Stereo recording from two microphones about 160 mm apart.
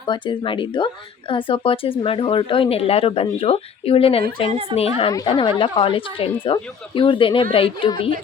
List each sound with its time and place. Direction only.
0.1 s speech: 30° left (ahead or behind)